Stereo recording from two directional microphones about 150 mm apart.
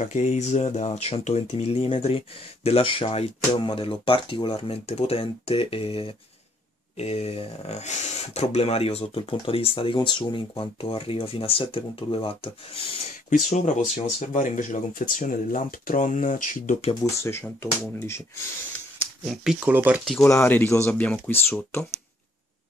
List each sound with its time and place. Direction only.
0.0 s speech: 50° left (ahead or behind)
13.5 s speech: 50° left (ahead or behind)
17.2 s speech: 15° left (ahead or behind)
19.2 s speech: centre (ahead or behind)
20.2 s speech: 15° left (ahead or behind)